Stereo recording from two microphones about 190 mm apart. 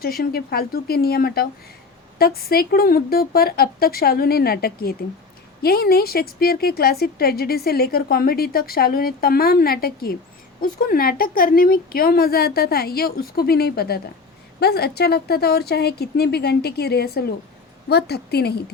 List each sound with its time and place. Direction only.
0.0 s a woman's voice: 55° left (ahead or behind)